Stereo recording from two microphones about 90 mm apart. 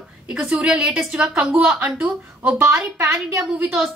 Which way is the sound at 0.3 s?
5° right (ahead or behind).